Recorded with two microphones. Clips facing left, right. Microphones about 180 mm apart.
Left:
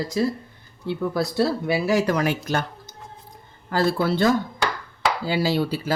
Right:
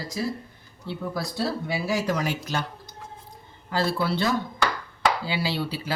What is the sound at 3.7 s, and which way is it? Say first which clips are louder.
Speech: left 4 dB; 50° left (ahead or behind).